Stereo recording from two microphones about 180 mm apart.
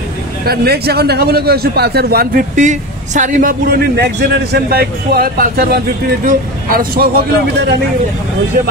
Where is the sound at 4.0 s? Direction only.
65° right (ahead or behind).